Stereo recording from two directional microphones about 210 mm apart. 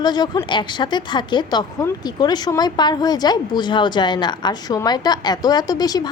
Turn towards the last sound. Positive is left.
turn(degrees=20)  # may be behind; listen again after turning